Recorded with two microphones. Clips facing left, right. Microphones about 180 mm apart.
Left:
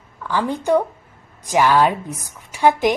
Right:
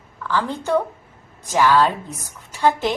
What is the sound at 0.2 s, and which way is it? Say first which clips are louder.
A woman's voice: left 2 dB; 15° left (ahead or behind).